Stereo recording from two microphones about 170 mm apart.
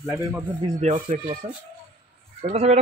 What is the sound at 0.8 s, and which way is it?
Speech, 45° right (ahead or behind).